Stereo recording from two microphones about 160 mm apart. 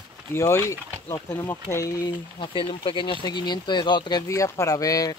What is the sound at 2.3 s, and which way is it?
Speech, 30° left (ahead or behind).